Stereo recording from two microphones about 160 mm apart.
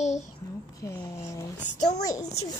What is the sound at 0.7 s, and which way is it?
Speech, 20° left (ahead or behind).